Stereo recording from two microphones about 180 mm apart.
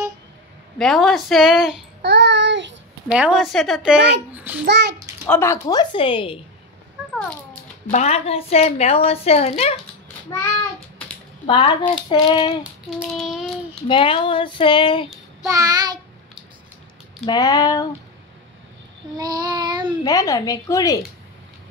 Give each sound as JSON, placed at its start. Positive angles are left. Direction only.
{"t": 0.7, "sound": "speech", "side_deg": 0}
{"t": 2.0, "sound": "child singing", "side_deg": -65}
{"t": 3.1, "sound": "speech", "side_deg": -5}
{"t": 4.6, "sound": "a child's voice", "side_deg": -70}
{"t": 5.3, "sound": "speech", "side_deg": 15}
{"t": 7.9, "sound": "a woman's voice", "side_deg": 35}
{"t": 11.4, "sound": "speech", "side_deg": 30}
{"t": 13.1, "sound": "child singing", "side_deg": 0}
{"t": 13.8, "sound": "speech", "side_deg": 25}
{"t": 15.4, "sound": "child singing", "side_deg": -20}
{"t": 17.3, "sound": "speech", "side_deg": 20}
{"t": 19.1, "sound": "child singing", "side_deg": -25}
{"t": 20.0, "sound": "speech", "side_deg": 20}